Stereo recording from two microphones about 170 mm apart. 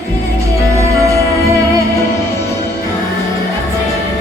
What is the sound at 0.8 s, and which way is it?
Music, 20° right (ahead or behind).